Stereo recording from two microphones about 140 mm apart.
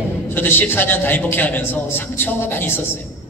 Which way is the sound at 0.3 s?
15° left (ahead or behind).